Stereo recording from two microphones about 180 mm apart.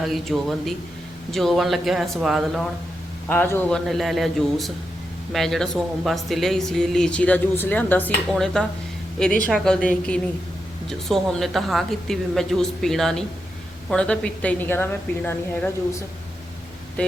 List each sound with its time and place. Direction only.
0.0 s speech: centre (ahead or behind)
3.2 s a woman's voice: 10° left (ahead or behind)
3.8 s a woman's voice: centre (ahead or behind)